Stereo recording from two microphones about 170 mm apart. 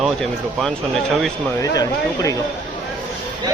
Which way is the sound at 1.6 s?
20° left (ahead or behind).